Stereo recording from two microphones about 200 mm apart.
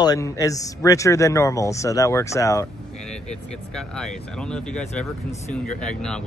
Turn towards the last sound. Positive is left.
turn(degrees=5)  # may be behind; listen again after turning